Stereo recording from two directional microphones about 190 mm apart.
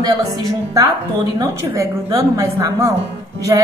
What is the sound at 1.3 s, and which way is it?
Speech, 15° right (ahead or behind).